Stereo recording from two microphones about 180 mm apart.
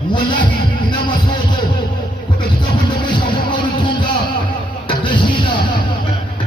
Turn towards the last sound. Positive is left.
turn(degrees=25)  # may be behind; listen again after turning